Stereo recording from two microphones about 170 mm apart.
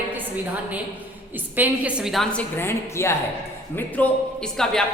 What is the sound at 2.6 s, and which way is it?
Speech, 15° left (ahead or behind).